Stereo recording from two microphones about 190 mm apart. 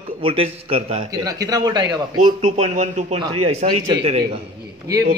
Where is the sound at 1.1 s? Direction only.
20° right (ahead or behind).